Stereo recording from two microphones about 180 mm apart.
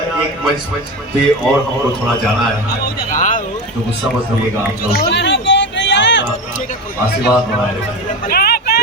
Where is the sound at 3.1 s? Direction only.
45° left (ahead or behind).